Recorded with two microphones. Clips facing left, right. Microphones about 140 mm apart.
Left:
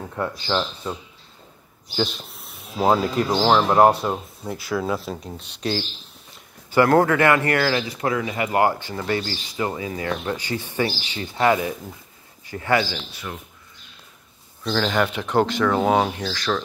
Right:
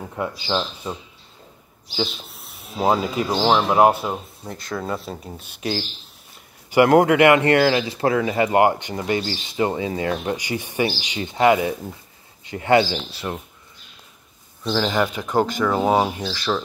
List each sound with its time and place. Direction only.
0.1 s speech: 10° right (ahead or behind)
2.0 s speech: centre (ahead or behind)
6.7 s speech: 15° right (ahead or behind)
10.2 s speech: 15° right (ahead or behind); by 13.4 s 30° right (ahead or behind)
14.6 s speech: 10° right (ahead or behind)